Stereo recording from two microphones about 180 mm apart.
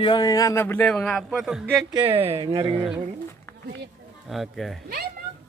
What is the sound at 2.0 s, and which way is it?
Speech, 30° right (ahead or behind).